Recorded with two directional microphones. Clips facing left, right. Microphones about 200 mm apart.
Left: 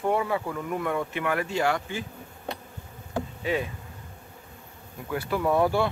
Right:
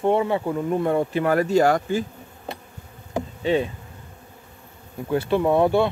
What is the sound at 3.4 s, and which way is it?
Insect, 30° right (ahead or behind).